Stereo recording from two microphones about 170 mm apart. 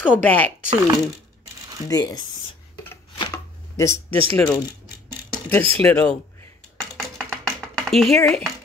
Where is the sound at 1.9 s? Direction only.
20° left (ahead or behind).